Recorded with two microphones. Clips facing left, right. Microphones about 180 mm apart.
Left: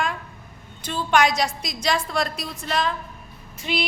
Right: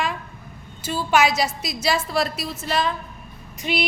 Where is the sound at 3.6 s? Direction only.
15° right (ahead or behind).